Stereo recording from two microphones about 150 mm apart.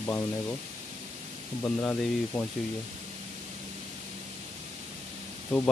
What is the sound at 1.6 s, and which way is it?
Speech, 10° left (ahead or behind).